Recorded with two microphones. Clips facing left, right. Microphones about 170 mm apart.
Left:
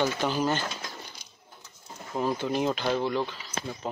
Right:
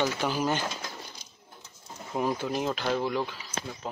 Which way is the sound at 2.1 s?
10° right (ahead or behind).